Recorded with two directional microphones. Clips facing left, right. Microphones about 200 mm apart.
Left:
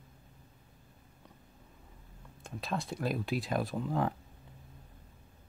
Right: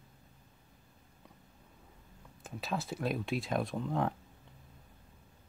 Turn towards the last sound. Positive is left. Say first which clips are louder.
# left 1 dB
turn(degrees=0)  # may be behind; listen again after turning